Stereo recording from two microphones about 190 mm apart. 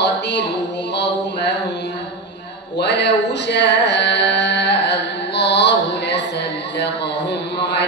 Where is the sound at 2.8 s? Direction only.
65° left (ahead or behind).